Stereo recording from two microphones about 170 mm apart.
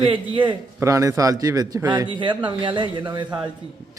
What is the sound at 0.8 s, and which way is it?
Speech, 20° right (ahead or behind).